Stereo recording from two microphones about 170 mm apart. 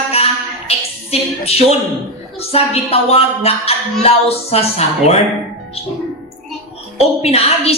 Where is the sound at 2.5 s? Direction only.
35° left (ahead or behind).